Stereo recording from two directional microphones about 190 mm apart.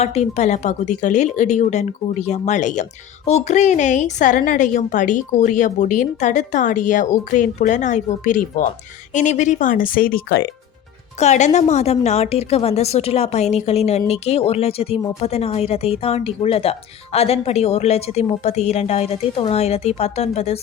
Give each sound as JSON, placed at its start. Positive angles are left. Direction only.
{"t": 0.0, "sound": "a woman's voice", "side_deg": 35}
{"t": 11.2, "sound": "a woman's voice", "side_deg": 35}